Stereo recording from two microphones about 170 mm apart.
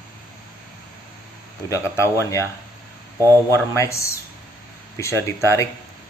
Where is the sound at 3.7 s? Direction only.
15° left (ahead or behind).